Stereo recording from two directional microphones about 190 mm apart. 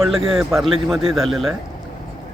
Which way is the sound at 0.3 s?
Centre (ahead or behind).